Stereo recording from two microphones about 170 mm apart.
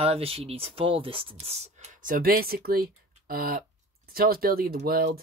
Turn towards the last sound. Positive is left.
turn(degrees=-60)  # may be behind; listen again after turning